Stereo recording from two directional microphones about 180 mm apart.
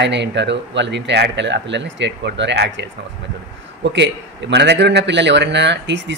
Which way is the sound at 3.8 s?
75° right (ahead or behind).